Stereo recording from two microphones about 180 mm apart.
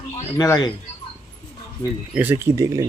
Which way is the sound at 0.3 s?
20° left (ahead or behind).